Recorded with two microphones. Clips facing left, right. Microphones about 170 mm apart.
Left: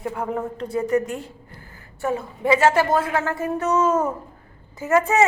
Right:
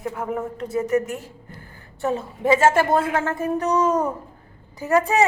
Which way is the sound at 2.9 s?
25° right (ahead or behind).